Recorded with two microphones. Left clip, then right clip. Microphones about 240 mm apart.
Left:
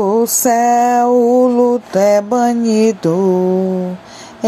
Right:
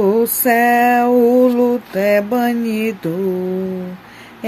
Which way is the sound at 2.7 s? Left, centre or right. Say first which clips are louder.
Left 7 dB; centre.